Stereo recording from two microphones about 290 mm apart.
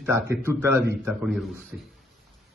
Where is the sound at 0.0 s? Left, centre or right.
Centre.